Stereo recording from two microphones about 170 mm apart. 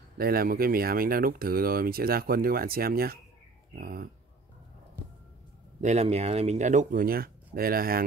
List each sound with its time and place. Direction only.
0.2 s speech: 60° right (ahead or behind)
5.0 s a sound: 10° right (ahead or behind)
5.8 s speech: 40° right (ahead or behind); by 8.0 s 60° right (ahead or behind)